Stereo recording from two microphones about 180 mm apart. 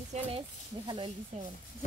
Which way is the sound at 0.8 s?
25° right (ahead or behind).